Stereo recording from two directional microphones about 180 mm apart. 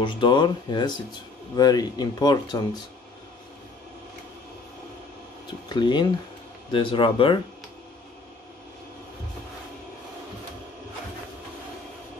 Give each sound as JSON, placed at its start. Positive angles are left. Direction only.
{"t": 0.0, "sound": "speech", "side_deg": 25}
{"t": 5.7, "sound": "speech", "side_deg": 25}